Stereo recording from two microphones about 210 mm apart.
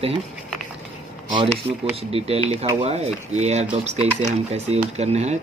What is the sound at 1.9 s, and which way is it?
Speech, 30° right (ahead or behind).